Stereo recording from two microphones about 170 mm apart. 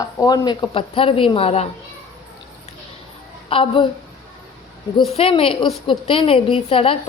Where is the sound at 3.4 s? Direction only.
30° left (ahead or behind).